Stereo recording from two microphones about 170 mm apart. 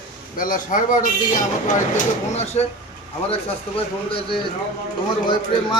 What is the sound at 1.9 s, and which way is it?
Speech, 40° left (ahead or behind).